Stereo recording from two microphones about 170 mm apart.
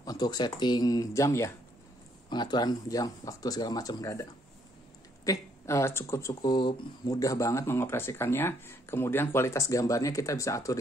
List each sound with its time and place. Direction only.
0.0 s speech: 20° left (ahead or behind)